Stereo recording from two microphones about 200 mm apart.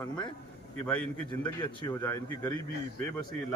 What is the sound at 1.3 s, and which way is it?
Speech, 20° left (ahead or behind).